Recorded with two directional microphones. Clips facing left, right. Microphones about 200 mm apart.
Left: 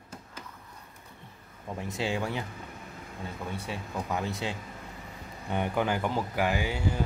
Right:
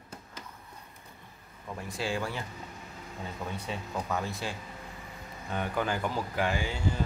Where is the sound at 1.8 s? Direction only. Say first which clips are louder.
Left 2 dB; 20° left (ahead or behind).